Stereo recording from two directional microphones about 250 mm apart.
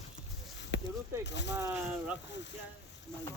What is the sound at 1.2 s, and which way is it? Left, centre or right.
Speech, left.